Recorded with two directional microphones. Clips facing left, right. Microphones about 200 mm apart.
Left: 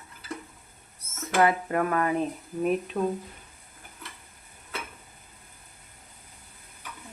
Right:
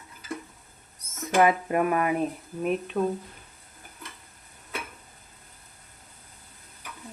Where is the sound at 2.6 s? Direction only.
Centre (ahead or behind).